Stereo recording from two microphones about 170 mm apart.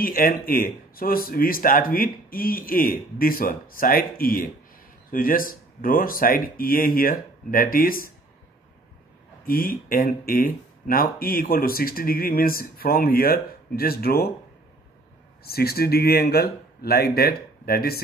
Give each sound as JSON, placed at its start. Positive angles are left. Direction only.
{"t": 0.0, "sound": "speech", "side_deg": 55}
{"t": 9.5, "sound": "speech", "side_deg": 55}
{"t": 15.4, "sound": "speech", "side_deg": 65}